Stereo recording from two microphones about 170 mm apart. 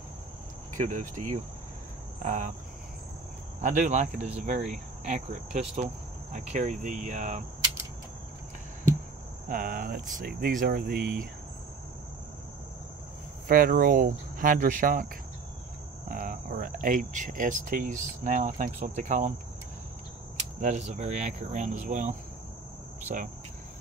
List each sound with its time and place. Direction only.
0.7 s speech: 50° right (ahead or behind)
3.6 s speech: 45° right (ahead or behind)
9.5 s speech: 55° right (ahead or behind)
13.5 s speech: 55° right (ahead or behind)
16.1 s speech: 55° right (ahead or behind)
20.6 s speech: 45° right (ahead or behind)
23.0 s cricket: 50° right (ahead or behind)